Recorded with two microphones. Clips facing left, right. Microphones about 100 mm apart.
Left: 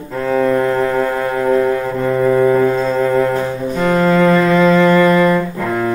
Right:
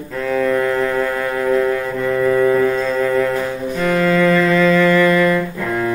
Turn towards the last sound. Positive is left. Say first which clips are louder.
# left 2 dB
turn(degrees=25)  # may be behind; listen again after turning